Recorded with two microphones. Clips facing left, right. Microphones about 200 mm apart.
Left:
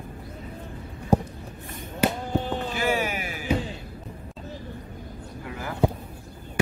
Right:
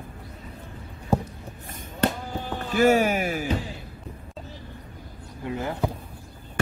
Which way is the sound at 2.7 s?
45° right (ahead or behind).